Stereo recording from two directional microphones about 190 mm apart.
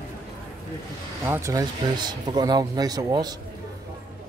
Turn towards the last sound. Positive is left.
turn(degrees=-20)  # may be behind; listen again after turning